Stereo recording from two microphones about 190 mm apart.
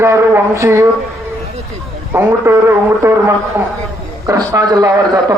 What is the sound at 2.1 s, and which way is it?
A man's voice, 15° right (ahead or behind).